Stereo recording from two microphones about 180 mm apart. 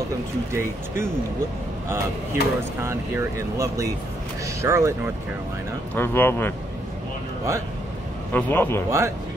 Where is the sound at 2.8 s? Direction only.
15° right (ahead or behind).